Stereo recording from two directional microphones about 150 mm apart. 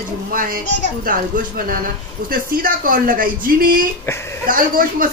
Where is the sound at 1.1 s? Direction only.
65° right (ahead or behind).